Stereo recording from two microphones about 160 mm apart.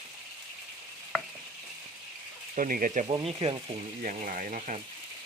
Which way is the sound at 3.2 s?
35° right (ahead or behind).